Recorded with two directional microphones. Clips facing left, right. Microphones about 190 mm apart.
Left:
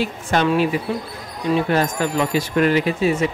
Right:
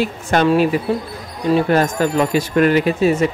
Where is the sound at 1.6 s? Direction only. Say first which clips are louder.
Right 4 dB; 45° right (ahead or behind).